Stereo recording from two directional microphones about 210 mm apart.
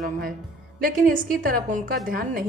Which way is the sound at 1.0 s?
40° right (ahead or behind).